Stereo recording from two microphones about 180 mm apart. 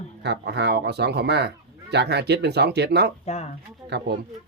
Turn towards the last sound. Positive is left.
turn(degrees=-70)  # may be behind; listen again after turning